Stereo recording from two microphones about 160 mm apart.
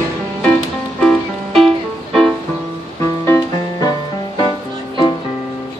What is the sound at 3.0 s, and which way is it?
Music, 20° left (ahead or behind).